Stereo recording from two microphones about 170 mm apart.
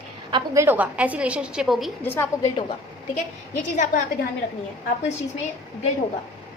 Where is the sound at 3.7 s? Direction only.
45° left (ahead or behind).